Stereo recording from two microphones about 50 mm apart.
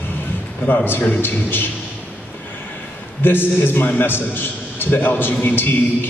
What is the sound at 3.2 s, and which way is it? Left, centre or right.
A man's voice, left.